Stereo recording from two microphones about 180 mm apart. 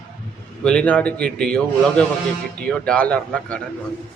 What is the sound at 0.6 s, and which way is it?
Speech, 5° left (ahead or behind).